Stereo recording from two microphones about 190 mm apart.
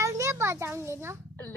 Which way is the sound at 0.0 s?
15° right (ahead or behind).